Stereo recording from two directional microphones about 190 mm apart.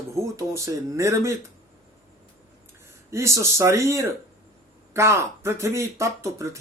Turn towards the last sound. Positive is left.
turn(degrees=-15)  # may be behind; listen again after turning